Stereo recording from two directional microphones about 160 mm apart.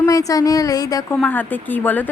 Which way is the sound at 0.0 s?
20° left (ahead or behind).